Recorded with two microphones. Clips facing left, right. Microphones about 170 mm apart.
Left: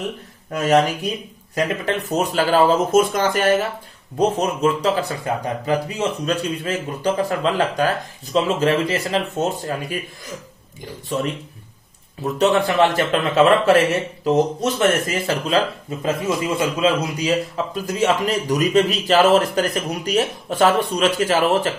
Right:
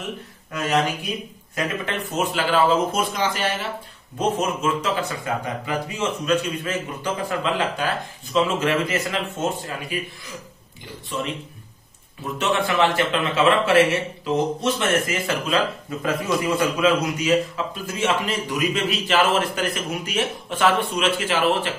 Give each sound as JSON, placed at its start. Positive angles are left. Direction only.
{"t": 0.6, "sound": "speech", "side_deg": 50}
{"t": 1.5, "sound": "speech", "side_deg": 35}
{"t": 4.2, "sound": "a man's voice", "side_deg": 35}
{"t": 12.4, "sound": "a man's voice", "side_deg": 40}
{"t": 16.0, "sound": "a man's voice", "side_deg": 25}
{"t": 17.8, "sound": "a man's voice", "side_deg": 40}